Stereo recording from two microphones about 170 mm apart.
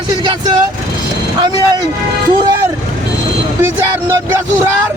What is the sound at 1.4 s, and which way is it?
Speech, 25° right (ahead or behind).